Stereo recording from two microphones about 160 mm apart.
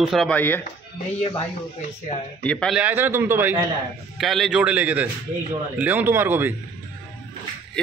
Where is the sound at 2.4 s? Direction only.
5° left (ahead or behind).